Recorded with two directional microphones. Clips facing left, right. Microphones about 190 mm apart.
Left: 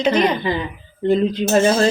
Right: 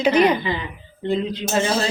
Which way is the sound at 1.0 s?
45° left (ahead or behind).